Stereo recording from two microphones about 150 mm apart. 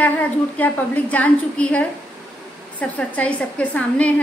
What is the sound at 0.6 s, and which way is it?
A woman's voice, 10° left (ahead or behind).